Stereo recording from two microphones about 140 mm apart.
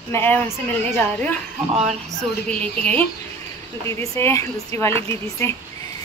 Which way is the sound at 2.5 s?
10° left (ahead or behind).